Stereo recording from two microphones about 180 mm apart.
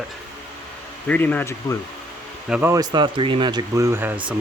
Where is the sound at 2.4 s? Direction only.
5° right (ahead or behind).